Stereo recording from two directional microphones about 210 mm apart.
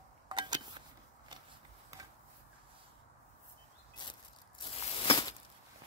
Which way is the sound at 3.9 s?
20° left (ahead or behind).